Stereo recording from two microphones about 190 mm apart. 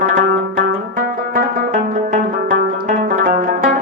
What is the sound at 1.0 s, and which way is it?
Music, 45° right (ahead or behind).